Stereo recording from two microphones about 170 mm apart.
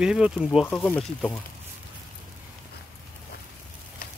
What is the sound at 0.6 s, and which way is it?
Speech, 10° left (ahead or behind).